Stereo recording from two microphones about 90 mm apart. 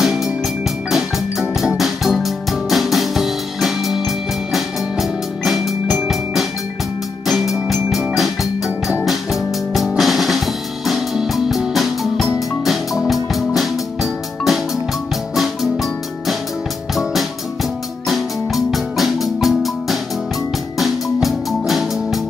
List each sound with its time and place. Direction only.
0.0 s music: 5° right (ahead or behind)
0.8 s organ: 5° right (ahead or behind)
1.5 s music: 5° right (ahead or behind)
9.0 s drum: centre (ahead or behind)
12.4 s music: centre (ahead or behind)
18.0 s marimba: centre (ahead or behind)
20.7 s music: centre (ahead or behind)